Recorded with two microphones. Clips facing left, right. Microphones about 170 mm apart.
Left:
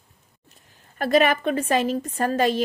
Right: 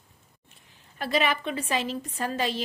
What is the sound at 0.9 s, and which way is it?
A woman's voice, 50° left (ahead or behind).